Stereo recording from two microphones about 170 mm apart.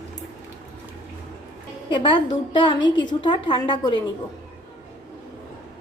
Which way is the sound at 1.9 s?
30° left (ahead or behind).